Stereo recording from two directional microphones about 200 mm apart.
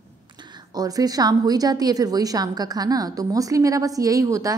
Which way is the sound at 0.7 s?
20° right (ahead or behind).